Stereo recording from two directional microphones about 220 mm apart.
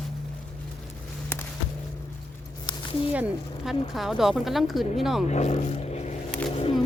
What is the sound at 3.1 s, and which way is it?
Speech, 5° right (ahead or behind).